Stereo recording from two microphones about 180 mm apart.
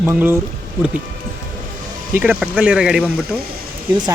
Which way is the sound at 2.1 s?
10° right (ahead or behind).